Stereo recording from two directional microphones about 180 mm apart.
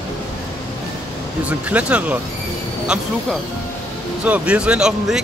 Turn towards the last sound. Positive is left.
turn(degrees=-5)  # may be behind; listen again after turning